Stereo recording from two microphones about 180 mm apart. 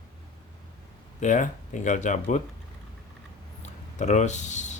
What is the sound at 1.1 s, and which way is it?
Speech, 45° left (ahead or behind).